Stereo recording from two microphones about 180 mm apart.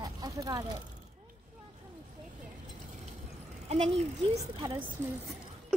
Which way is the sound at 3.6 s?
35° right (ahead or behind).